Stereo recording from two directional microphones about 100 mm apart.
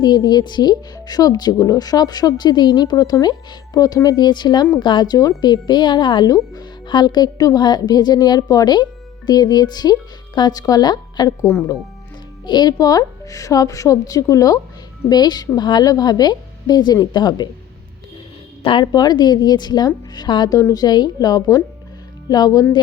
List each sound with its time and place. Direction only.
0.0 s a woman's voice: 45° left (ahead or behind)
11.4 s speech: 30° left (ahead or behind)
12.5 s a woman's voice: 45° left (ahead or behind)
18.6 s speech: 60° left (ahead or behind)
18.9 s a woman's voice: 45° left (ahead or behind)
20.6 s speech: 30° left (ahead or behind)
20.8 s a woman's voice: 45° left (ahead or behind)